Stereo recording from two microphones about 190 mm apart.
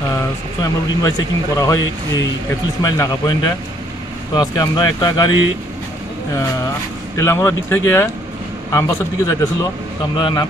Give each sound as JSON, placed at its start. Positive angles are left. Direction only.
{"t": 0.6, "sound": "speech", "side_deg": 20}
{"t": 7.2, "sound": "speech", "side_deg": 15}